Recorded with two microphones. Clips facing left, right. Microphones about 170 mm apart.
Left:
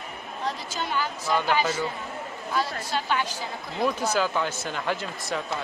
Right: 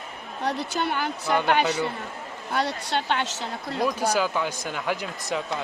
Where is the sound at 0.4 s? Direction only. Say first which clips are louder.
Right 5 dB; 65° right (ahead or behind).